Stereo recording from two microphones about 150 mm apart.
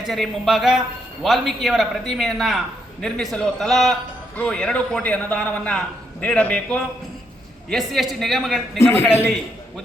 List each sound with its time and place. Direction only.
0.0 s a man's voice: centre (ahead or behind)
8.8 s a man's voice: 15° left (ahead or behind)